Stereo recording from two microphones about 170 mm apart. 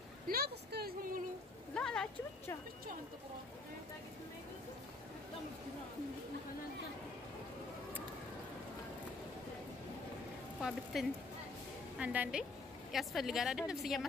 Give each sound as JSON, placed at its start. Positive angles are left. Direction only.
{"t": 0.3, "sound": "a sound", "side_deg": -70}
{"t": 1.8, "sound": "a woman's voice", "side_deg": 5}
{"t": 10.6, "sound": "a woman's voice", "side_deg": 0}